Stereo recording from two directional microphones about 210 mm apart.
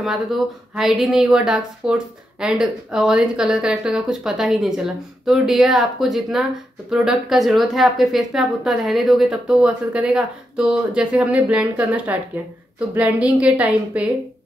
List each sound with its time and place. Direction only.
0.0 s a woman's voice: centre (ahead or behind)